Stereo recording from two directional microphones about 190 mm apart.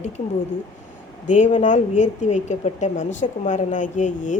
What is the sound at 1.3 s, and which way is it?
A woman's voice, 40° left (ahead or behind).